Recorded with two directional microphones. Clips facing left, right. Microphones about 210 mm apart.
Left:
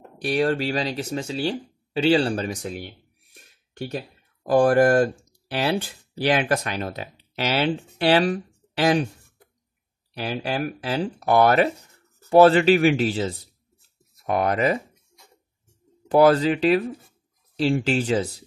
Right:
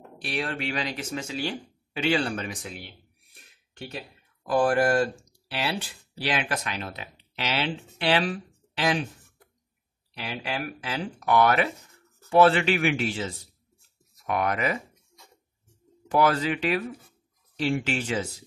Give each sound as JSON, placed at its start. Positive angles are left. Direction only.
{"t": 0.2, "sound": "speech", "side_deg": 40}
{"t": 10.1, "sound": "speech", "side_deg": 35}
{"t": 16.1, "sound": "speech", "side_deg": 30}